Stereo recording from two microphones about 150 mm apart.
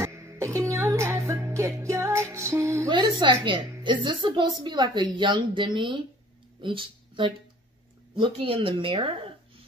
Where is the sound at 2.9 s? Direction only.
30° right (ahead or behind).